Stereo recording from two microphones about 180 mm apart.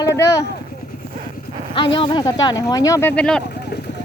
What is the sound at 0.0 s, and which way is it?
Vehicle, 15° left (ahead or behind).